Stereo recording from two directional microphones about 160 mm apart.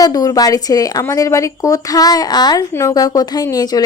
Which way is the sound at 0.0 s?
20° left (ahead or behind).